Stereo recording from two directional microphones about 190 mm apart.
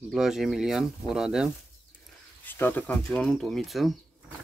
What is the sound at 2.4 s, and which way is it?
Speech, 10° left (ahead or behind).